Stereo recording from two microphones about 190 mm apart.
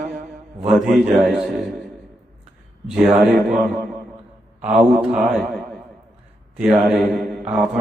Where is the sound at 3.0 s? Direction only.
Centre (ahead or behind).